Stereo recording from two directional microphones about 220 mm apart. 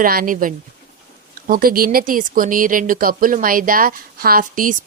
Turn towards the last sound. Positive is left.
turn(degrees=-40)  # may be behind; listen again after turning